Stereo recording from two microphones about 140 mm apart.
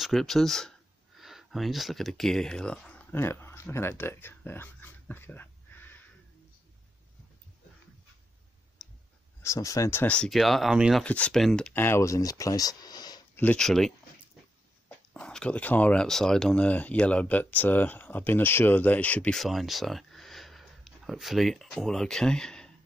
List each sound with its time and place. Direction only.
0.0 s speech: centre (ahead or behind)
9.4 s speech: 25° left (ahead or behind); by 11.1 s 5° right (ahead or behind)
11.1 s speech: 10° left (ahead or behind)
11.7 s speech: 15° left (ahead or behind)
13.4 s speech: 10° left (ahead or behind)
15.1 s speech: 5° left (ahead or behind)